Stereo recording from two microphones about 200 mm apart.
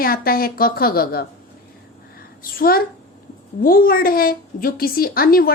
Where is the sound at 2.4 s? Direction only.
45° left (ahead or behind).